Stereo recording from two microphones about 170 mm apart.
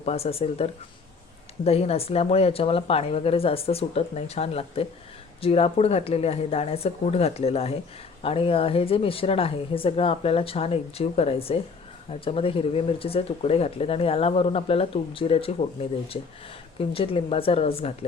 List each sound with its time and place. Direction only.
0.0 s speech: 35° left (ahead or behind)
16.9 s speech: 35° left (ahead or behind)